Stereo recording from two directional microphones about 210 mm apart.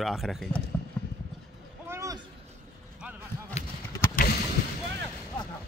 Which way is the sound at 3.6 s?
30° left (ahead or behind).